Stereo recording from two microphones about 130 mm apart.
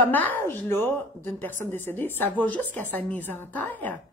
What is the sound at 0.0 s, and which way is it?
A woman's voice, 15° left (ahead or behind).